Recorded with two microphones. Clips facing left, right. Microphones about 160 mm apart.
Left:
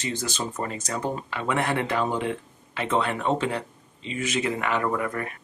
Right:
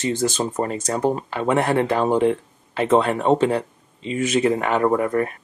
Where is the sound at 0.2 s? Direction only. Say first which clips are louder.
Right 8 dB; 40° right (ahead or behind).